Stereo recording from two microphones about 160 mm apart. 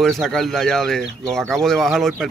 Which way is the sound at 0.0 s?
Centre (ahead or behind).